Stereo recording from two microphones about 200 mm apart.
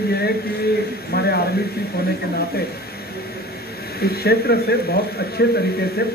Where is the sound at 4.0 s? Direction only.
50° left (ahead or behind).